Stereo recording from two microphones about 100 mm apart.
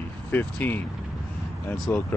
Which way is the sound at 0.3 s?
20° left (ahead or behind).